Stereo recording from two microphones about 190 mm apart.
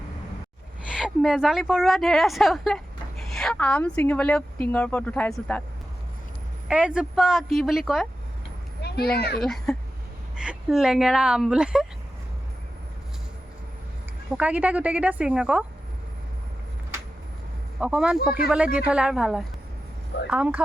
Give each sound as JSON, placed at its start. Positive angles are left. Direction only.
{"t": 0.9, "sound": "a woman's voice", "side_deg": 0}
{"t": 6.7, "sound": "a woman's voice", "side_deg": -5}
{"t": 8.8, "sound": "a child's voice", "side_deg": 55}
{"t": 9.4, "sound": "a woman's voice", "side_deg": 0}
{"t": 14.3, "sound": "a woman's voice", "side_deg": -5}
{"t": 17.7, "sound": "a woman's voice", "side_deg": -5}